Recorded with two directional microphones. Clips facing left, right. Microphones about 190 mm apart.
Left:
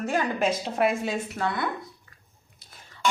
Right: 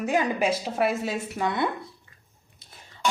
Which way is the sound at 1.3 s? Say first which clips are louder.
Right 5 dB; 20° right (ahead or behind).